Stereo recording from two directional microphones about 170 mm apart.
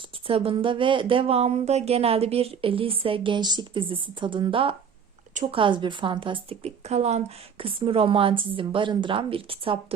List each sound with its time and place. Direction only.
0.3 s speech: 35° right (ahead or behind)
5.3 s a sound: 45° right (ahead or behind)
5.5 s speech: 30° right (ahead or behind)